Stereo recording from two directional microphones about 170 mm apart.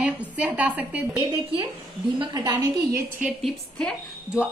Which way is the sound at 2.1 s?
25° right (ahead or behind).